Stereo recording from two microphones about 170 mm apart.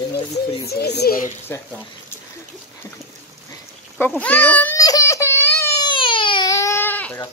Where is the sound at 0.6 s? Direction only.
70° left (ahead or behind).